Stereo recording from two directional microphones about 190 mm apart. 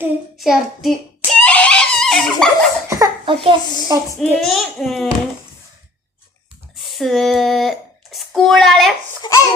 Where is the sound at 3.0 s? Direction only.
25° right (ahead or behind).